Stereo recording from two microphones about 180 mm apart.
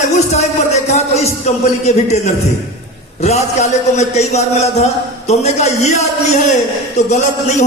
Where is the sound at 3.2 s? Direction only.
40° left (ahead or behind).